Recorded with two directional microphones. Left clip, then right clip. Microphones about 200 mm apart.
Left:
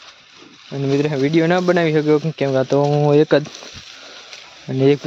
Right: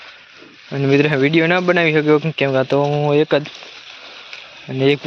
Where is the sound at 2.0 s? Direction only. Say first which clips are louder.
Right 2 dB; 10° left (ahead or behind).